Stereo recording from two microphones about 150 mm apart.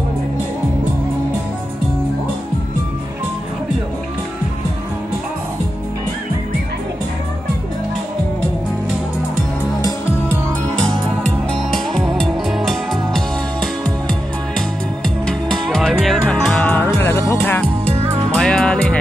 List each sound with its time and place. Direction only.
12.2 s music: centre (ahead or behind)
15.2 s music: 5° left (ahead or behind)
17.8 s music: 45° right (ahead or behind)
18.3 s music: 5° left (ahead or behind)